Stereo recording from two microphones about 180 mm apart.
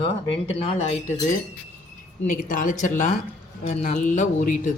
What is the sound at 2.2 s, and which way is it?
Speech, 50° left (ahead or behind).